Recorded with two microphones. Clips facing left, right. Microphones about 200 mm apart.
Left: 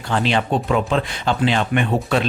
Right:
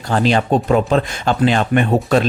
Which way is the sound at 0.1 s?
40° right (ahead or behind).